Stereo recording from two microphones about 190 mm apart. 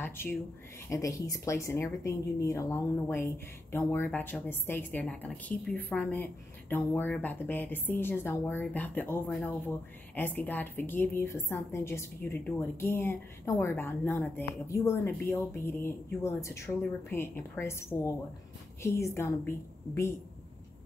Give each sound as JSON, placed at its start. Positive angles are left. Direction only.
{"t": 0.0, "sound": "a woman's voice", "side_deg": 10}